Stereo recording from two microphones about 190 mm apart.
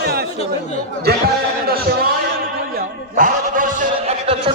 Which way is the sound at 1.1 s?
55° right (ahead or behind).